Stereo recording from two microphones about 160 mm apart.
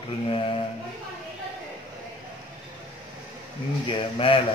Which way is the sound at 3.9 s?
35° left (ahead or behind).